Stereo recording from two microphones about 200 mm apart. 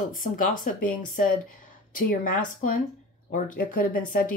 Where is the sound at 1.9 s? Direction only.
40° left (ahead or behind).